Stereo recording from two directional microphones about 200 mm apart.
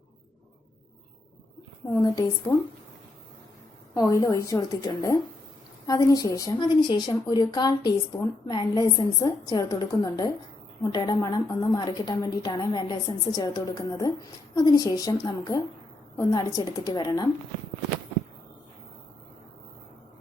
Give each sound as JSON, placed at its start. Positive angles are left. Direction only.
{"t": 2.0, "sound": "a woman's voice", "side_deg": 20}
{"t": 3.9, "sound": "a woman's voice", "side_deg": 15}